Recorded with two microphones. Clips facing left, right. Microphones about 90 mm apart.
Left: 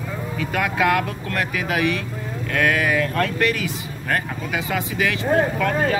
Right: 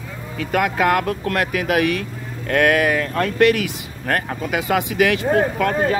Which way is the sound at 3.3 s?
60° right (ahead or behind).